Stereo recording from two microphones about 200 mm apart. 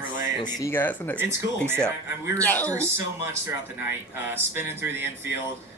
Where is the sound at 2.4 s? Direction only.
10° left (ahead or behind).